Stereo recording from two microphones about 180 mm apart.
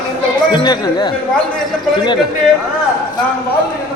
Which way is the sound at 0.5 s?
25° left (ahead or behind).